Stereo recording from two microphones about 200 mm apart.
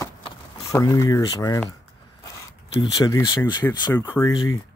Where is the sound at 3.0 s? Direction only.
20° left (ahead or behind).